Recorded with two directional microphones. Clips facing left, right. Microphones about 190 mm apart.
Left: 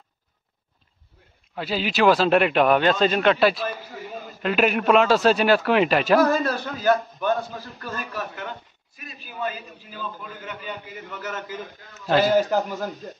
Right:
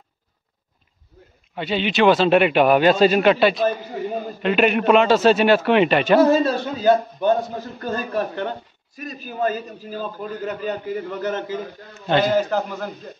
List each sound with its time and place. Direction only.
1.5 s speech: centre (ahead or behind)
4.1 s a sound: 45° right (ahead or behind)
4.4 s speech: centre (ahead or behind)
6.1 s a man's voice: 25° right (ahead or behind)
12.1 s a man's voice: 5° left (ahead or behind)